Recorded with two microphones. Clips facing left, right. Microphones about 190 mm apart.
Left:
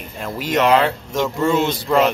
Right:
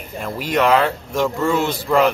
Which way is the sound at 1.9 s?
Centre (ahead or behind).